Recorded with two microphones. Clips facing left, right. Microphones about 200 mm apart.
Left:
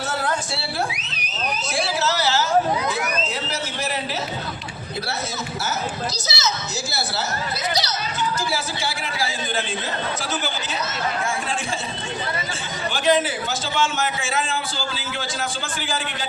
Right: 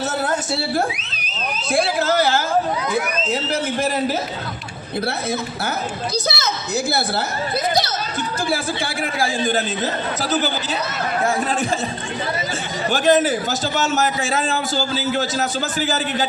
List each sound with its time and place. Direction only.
1.7 s a man's voice: 55° right (ahead or behind)
6.2 s a woman's voice: 55° right (ahead or behind)
7.7 s a man's voice: 50° right (ahead or behind)
12.9 s a man's voice: 45° right (ahead or behind)